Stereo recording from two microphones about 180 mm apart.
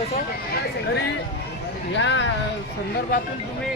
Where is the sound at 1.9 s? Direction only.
80° left.